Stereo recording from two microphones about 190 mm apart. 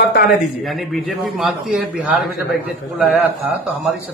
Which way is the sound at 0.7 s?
Centre (ahead or behind).